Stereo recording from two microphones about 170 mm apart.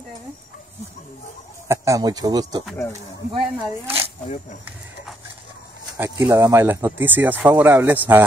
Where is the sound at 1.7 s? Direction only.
20° right (ahead or behind).